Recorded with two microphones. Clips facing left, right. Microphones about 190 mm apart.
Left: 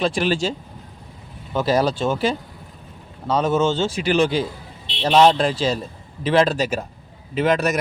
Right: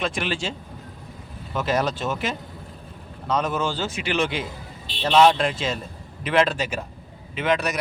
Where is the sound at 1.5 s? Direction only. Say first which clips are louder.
Left 5 dB; 35° left (ahead or behind).